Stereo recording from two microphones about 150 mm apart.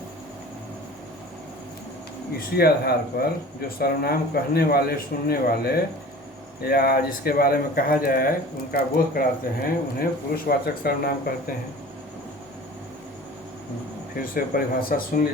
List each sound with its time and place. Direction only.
2.6 s a man's voice: 90° left
14.2 s speech: 75° left (ahead or behind)